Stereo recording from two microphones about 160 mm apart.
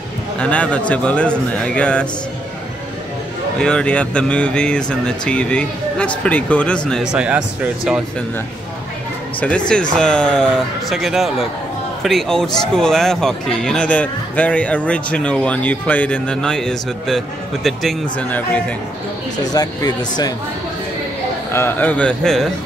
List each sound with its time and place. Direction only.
0.4 s speech: 5° left (ahead or behind)
3.5 s a man's voice: 5° left (ahead or behind)
9.4 s a man's voice: 5° left (ahead or behind)
19.4 s speech: 25° left (ahead or behind)
21.5 s speech: 15° left (ahead or behind)